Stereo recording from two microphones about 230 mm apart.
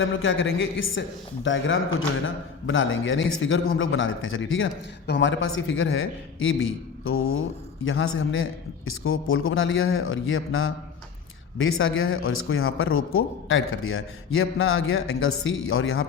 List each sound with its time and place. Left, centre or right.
0.0 s a man's voice: left